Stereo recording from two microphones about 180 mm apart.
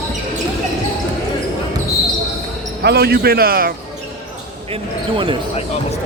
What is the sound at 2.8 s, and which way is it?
Speech, 60° right (ahead or behind).